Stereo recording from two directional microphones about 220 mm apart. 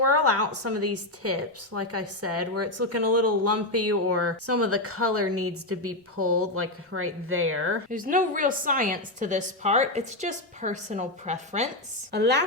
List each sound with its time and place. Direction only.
0.0 s a woman's voice: 90° right; by 7.8 s 70° right (ahead or behind)
7.9 s a woman's voice: 40° right (ahead or behind)
12.1 s a woman's voice: 50° right (ahead or behind)